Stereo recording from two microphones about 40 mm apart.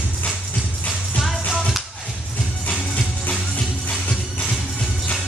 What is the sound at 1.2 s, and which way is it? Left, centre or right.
Music, centre.